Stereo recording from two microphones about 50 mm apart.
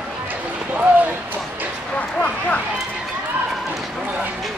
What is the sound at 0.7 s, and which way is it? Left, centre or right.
Speech, right.